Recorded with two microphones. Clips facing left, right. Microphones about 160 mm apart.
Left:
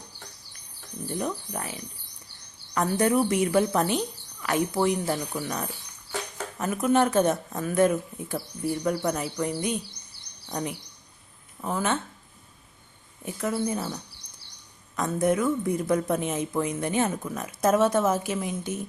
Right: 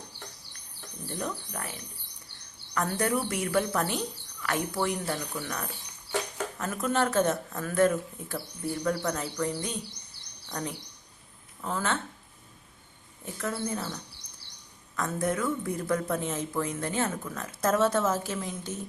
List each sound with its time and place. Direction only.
1.0 s a woman's voice: 20° left (ahead or behind)
10.5 s a woman's voice: 15° left (ahead or behind)
13.2 s a woman's voice: 15° left (ahead or behind)